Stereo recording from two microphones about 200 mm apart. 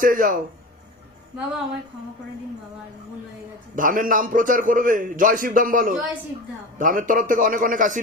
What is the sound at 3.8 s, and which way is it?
A man's voice, 45° right (ahead or behind).